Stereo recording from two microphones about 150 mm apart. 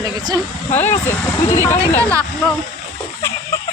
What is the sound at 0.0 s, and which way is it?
Speech, 25° right (ahead or behind).